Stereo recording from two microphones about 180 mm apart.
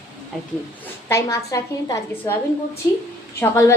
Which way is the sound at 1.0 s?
15° left (ahead or behind).